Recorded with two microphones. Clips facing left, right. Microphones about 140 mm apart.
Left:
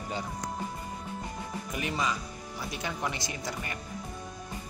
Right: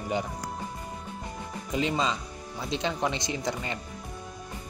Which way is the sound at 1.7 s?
20° right (ahead or behind).